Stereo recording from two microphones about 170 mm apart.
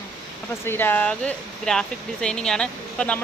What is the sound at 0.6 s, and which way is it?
Speech, 15° left (ahead or behind).